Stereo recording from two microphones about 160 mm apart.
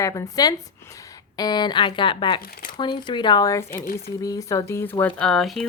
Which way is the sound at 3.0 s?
30° left (ahead or behind).